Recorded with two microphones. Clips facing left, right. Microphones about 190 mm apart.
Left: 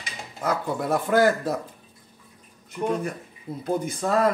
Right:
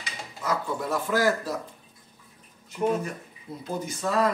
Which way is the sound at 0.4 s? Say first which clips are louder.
Left 3 dB; 55° left (ahead or behind).